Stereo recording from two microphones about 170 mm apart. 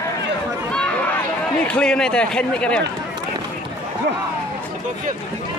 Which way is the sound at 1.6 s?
5° left (ahead or behind).